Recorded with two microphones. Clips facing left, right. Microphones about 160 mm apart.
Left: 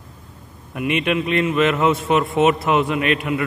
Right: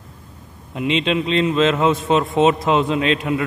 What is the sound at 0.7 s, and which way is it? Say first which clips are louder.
A man's voice: right 1 dB; 20° right (ahead or behind).